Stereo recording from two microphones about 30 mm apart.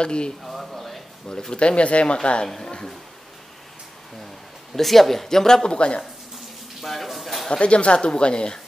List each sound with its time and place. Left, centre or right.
0.0 s speech: left
0.4 s a sound: centre
1.3 s speech: left
2.4 s speech: centre
4.7 s speech: centre
5.6 s speech: left
6.8 s a sound: centre
7.6 s speech: left